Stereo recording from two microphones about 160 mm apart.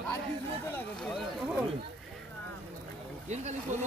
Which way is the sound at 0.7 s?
Centre (ahead or behind).